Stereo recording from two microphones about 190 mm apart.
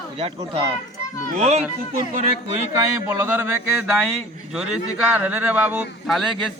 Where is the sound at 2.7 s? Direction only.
15° right (ahead or behind).